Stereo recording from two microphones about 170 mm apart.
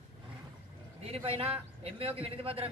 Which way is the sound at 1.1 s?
35° right (ahead or behind).